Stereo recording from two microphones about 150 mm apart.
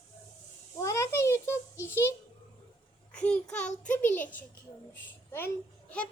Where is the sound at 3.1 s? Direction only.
5° left (ahead or behind).